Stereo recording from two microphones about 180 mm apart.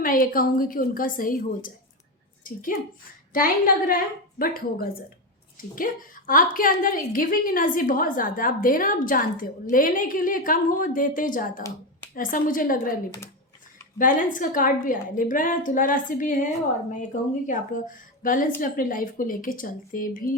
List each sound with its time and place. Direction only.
0.0 s a woman's voice: 50° left (ahead or behind)
14.0 s a woman's voice: 45° left (ahead or behind)